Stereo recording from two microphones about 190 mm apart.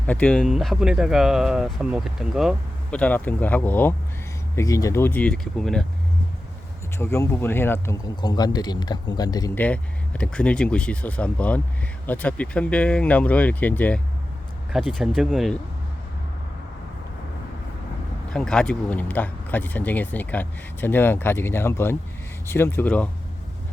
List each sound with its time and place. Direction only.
0.1 s speech: 5° left (ahead or behind)
7.0 s speech: 15° left (ahead or behind)
8.1 s speech: 20° left (ahead or behind)
9.6 s speech: 10° left (ahead or behind)
18.3 s speech: 5° left (ahead or behind)